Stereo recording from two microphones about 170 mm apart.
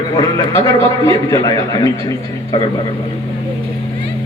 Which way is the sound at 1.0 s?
20° left (ahead or behind).